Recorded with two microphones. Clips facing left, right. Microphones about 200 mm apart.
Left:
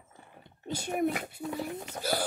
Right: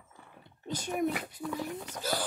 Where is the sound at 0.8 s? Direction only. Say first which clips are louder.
Left 2 dB; 45° left (ahead or behind).